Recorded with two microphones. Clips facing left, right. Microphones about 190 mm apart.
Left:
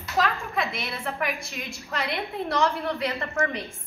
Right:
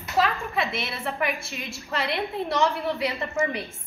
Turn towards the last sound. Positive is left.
turn(degrees=-10)  # may be behind; listen again after turning